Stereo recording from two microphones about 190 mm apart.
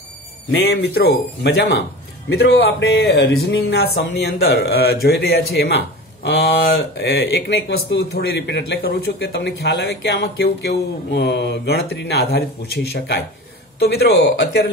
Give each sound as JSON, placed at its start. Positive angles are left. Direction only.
{"t": 0.5, "sound": "speech", "side_deg": 55}